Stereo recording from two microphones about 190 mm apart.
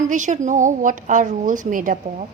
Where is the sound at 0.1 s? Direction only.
40° right (ahead or behind).